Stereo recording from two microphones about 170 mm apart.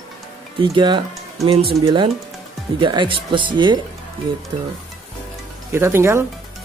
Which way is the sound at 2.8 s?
25° right (ahead or behind).